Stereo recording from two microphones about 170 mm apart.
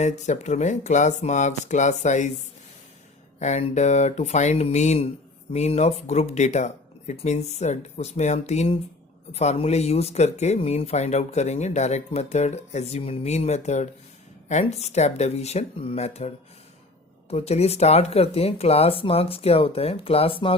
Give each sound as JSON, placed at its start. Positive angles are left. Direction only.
{"t": 0.0, "sound": "speech", "side_deg": 45}
{"t": 3.4, "sound": "speech", "side_deg": 40}